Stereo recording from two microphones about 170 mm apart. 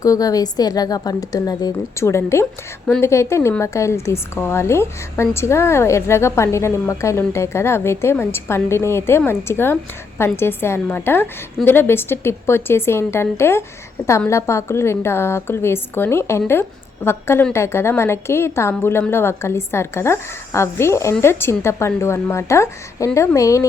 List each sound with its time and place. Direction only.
0.0 s a woman's voice: 20° left (ahead or behind)